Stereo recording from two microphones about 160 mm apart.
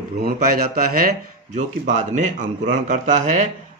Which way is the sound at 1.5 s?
50° right (ahead or behind).